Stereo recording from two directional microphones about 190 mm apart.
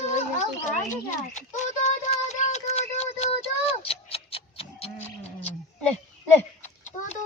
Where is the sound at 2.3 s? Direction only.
35° left (ahead or behind).